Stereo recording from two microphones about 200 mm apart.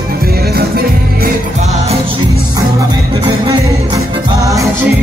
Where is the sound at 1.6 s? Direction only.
30° right (ahead or behind).